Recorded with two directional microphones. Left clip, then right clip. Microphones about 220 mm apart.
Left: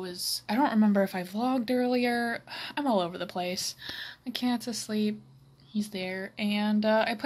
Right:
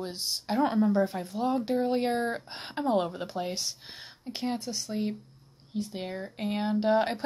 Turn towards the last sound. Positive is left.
turn(degrees=0)  # may be behind; listen again after turning